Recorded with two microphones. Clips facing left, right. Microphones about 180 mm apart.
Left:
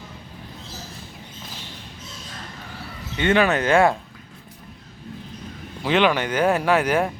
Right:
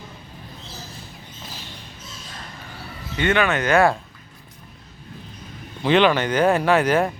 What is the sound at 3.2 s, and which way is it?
Speech, 30° left (ahead or behind).